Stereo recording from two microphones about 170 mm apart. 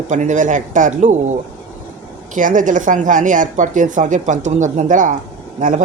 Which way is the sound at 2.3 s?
50° right (ahead or behind).